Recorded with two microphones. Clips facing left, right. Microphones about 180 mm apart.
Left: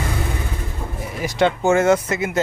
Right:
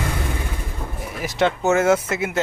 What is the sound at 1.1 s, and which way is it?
Speech, centre (ahead or behind).